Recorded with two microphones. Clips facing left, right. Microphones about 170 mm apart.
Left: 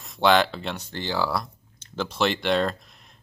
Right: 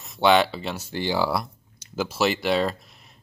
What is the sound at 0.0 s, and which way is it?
Speech, centre (ahead or behind).